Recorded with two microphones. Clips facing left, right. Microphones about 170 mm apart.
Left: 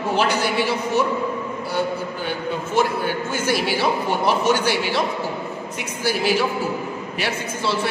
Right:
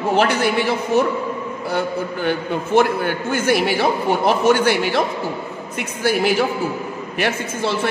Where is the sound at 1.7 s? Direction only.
55° right (ahead or behind).